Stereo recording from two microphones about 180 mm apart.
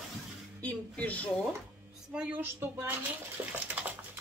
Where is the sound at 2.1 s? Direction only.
10° right (ahead or behind).